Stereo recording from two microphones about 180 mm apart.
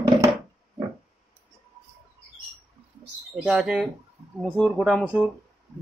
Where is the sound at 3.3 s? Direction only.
Centre (ahead or behind).